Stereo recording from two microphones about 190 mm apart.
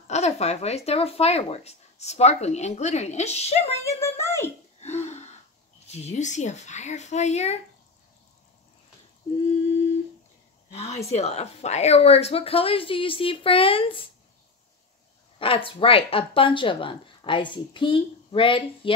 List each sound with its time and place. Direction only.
0.1 s speech: 35° left (ahead or behind)
4.0 s a sound: 15° left (ahead or behind)
4.8 s a sound: 35° left (ahead or behind)
5.9 s speech: 35° left (ahead or behind)
10.7 s speech: 35° left (ahead or behind)
15.3 s speech: 30° left (ahead or behind)